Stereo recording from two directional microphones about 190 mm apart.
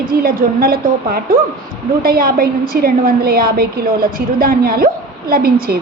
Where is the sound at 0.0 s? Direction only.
50° right (ahead or behind).